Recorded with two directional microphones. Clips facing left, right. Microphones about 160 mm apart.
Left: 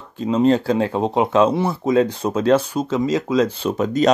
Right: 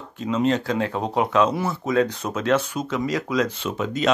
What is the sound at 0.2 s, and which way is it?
Speech, 35° left (ahead or behind).